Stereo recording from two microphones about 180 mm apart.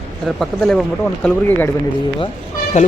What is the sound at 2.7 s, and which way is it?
Speech, 40° left (ahead or behind).